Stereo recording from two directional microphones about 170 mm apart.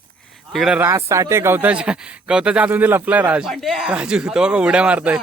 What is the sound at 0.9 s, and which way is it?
Speech, 15° right (ahead or behind).